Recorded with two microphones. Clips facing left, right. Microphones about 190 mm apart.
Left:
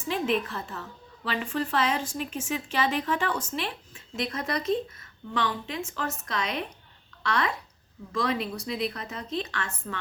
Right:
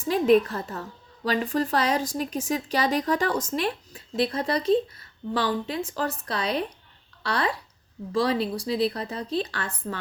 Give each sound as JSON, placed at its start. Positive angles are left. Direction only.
{"t": 0.1, "sound": "a woman's voice", "side_deg": -40}